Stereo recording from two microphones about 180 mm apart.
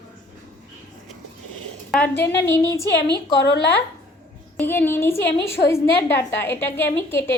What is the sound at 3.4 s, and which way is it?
Speech, 70° left (ahead or behind).